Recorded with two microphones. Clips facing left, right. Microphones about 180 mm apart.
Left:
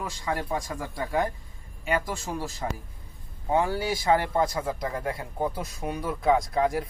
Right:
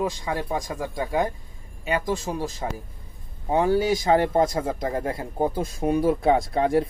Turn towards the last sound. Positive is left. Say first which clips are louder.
# right 4 dB
turn(degrees=-30)  # may be behind; listen again after turning